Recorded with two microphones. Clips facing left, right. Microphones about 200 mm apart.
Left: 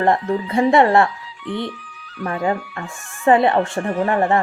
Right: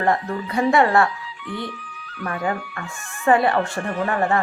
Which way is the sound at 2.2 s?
25° left (ahead or behind).